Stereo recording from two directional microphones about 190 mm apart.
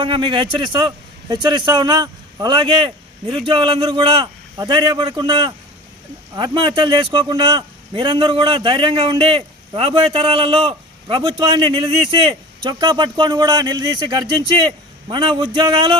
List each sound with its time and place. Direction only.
0.0 s a man's voice: 25° right (ahead or behind)